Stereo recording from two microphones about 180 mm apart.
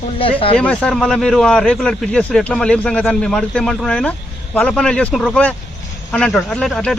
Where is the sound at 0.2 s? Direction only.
30° left (ahead or behind).